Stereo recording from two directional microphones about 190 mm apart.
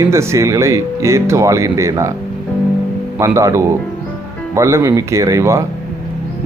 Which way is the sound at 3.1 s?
15° right (ahead or behind).